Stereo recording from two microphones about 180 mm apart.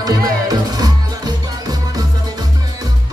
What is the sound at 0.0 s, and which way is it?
Music, 20° right (ahead or behind).